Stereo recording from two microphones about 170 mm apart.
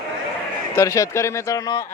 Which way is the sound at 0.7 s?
20° left (ahead or behind).